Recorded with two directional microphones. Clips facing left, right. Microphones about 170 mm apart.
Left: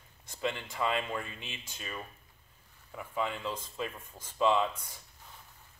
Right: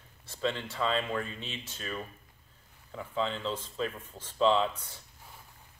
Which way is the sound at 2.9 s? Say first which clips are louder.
Right 2 dB; 10° left (ahead or behind).